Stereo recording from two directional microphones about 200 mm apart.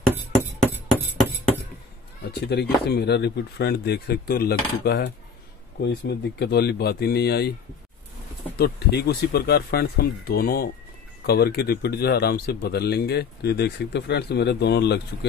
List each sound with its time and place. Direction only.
0.2 s music: 10° right (ahead or behind)
2.4 s speech: 55° left (ahead or behind)
8.5 s speech: 50° left (ahead or behind)